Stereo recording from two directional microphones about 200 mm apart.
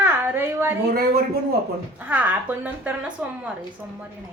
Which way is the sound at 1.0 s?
50° right (ahead or behind).